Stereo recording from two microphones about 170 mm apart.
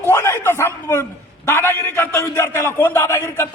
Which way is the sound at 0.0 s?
15° left (ahead or behind).